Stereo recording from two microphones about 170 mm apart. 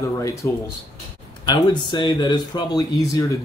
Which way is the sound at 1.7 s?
25° left (ahead or behind).